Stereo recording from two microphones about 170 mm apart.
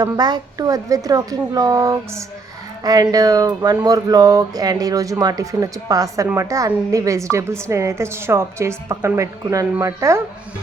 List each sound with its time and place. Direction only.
0.0 s a woman's voice: 25° right (ahead or behind)